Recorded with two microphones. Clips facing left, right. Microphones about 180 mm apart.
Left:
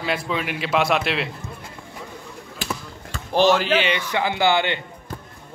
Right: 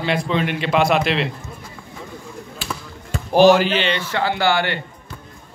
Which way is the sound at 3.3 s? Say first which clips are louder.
Right 5 dB; 5° right (ahead or behind).